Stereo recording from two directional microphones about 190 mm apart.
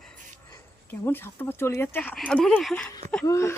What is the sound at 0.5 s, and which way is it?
Speech, 10° left (ahead or behind).